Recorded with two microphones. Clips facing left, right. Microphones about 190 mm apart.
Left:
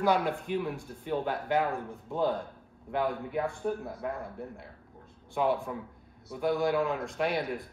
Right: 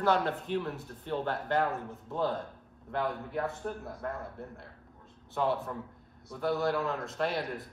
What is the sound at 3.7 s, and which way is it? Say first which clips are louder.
Speech: left 4 dB; 5° left (ahead or behind).